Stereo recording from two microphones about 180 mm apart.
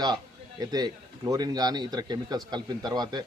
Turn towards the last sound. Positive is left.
turn(degrees=-25)  # may be behind; listen again after turning